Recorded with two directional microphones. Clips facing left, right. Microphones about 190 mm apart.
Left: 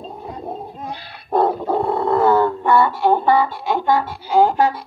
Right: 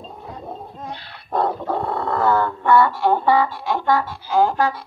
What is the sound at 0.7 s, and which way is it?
Dog, 10° left (ahead or behind).